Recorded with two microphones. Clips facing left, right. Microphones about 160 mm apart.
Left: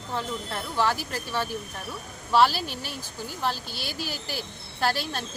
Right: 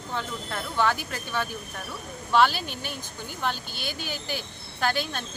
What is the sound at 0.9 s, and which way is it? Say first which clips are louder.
Speech: left 1 dB; 30° left (ahead or behind).